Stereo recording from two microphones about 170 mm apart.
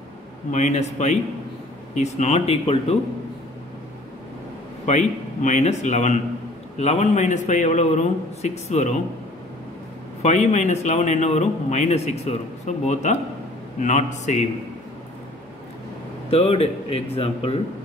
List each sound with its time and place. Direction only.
0.5 s speech: 45° left (ahead or behind)
4.8 s speech: 45° left (ahead or behind)
10.2 s speech: 45° left (ahead or behind)
16.3 s speech: 35° left (ahead or behind)